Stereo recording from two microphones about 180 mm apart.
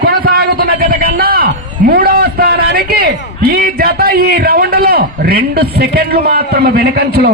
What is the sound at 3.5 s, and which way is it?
A man's voice, 60° right (ahead or behind).